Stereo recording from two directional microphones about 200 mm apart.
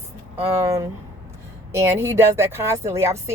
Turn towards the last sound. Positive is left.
turn(degrees=-15)  # may be behind; listen again after turning